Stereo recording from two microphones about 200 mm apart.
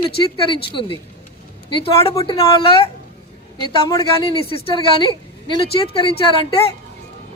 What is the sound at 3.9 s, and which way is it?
A woman's voice, 15° left (ahead or behind).